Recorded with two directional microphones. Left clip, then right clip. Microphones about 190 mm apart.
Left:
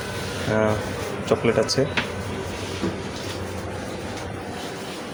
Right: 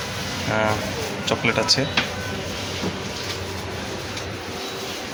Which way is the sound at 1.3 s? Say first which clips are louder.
Right 1 dB; 30° left (ahead or behind).